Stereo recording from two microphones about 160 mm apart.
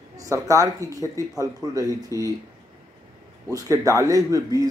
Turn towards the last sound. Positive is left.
turn(degrees=-20)  # may be behind; listen again after turning